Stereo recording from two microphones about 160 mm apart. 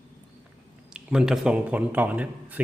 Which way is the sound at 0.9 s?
5° right (ahead or behind).